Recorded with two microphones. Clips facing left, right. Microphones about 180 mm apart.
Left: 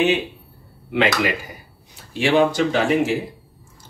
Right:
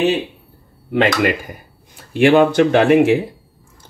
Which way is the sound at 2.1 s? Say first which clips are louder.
Right 6 dB; 60° right (ahead or behind).